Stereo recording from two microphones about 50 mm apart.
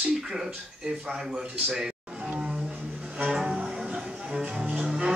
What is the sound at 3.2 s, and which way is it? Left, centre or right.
Music, centre.